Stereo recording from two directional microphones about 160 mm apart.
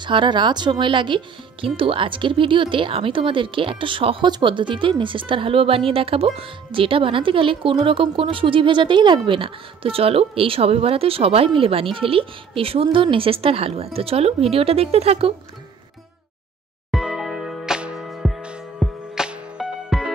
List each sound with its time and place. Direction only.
0.0 s speech: 30° right (ahead or behind)
16.9 s music: centre (ahead or behind)